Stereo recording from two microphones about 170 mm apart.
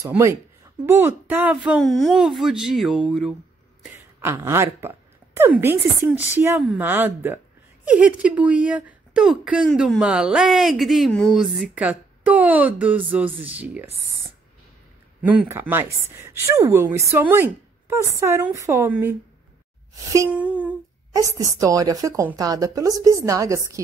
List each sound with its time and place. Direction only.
0.0 s a woman's voice: 15° right (ahead or behind)
3.9 s a woman's voice: 15° right (ahead or behind)
15.2 s a woman's voice: 10° right (ahead or behind)
20.2 s a sound: 10° right (ahead or behind)
21.1 s a woman's voice: 20° right (ahead or behind)